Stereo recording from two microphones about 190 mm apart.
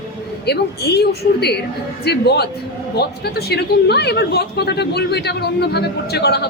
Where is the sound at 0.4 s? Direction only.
55° left (ahead or behind).